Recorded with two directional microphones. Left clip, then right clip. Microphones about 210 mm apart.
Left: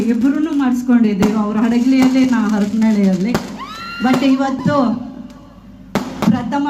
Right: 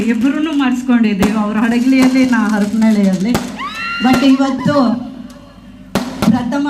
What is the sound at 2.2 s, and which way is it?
Speech, 45° left (ahead or behind).